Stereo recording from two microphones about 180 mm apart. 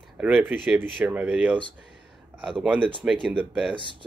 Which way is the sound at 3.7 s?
25° right (ahead or behind).